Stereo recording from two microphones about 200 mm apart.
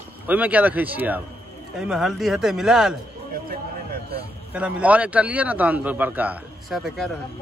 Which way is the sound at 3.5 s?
50° right (ahead or behind).